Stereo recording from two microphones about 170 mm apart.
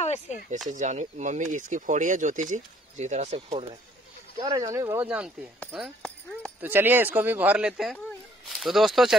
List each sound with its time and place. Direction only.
0.0 s speech: 40° left (ahead or behind)
0.7 s speech: 45° right (ahead or behind)
4.4 s speech: 20° right (ahead or behind); by 9.1 s centre (ahead or behind)